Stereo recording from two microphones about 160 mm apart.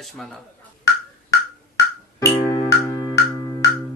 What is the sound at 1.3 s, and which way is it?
Music, 20° left (ahead or behind).